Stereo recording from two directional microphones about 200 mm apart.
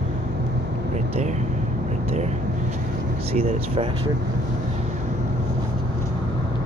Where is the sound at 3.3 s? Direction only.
30° right (ahead or behind).